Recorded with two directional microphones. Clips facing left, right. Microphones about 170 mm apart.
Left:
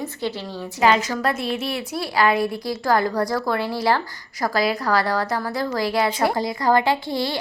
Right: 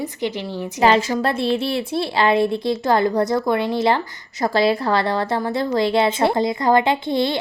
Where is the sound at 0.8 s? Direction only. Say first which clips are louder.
Right 2 dB; 30° right (ahead or behind).